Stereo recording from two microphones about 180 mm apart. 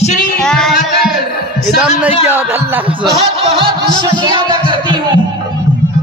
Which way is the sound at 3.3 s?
30° right (ahead or behind).